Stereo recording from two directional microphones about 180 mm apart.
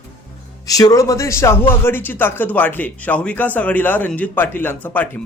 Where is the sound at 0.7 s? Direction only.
20° left (ahead or behind).